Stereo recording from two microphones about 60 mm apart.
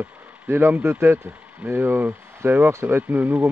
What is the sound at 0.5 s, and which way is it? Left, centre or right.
Speech, right.